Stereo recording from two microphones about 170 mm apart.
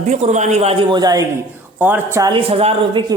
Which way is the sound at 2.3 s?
35° right (ahead or behind).